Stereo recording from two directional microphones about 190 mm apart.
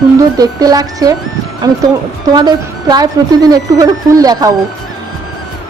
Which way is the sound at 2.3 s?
20° right (ahead or behind).